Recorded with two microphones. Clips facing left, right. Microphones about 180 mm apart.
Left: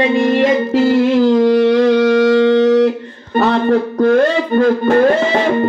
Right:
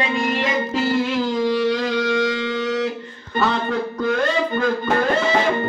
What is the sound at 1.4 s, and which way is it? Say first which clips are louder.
Music: left 9 dB; 60° left (ahead or behind).